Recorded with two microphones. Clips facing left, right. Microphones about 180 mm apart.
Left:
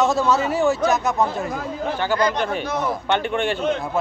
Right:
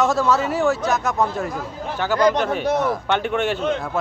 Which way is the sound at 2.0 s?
5° right (ahead or behind).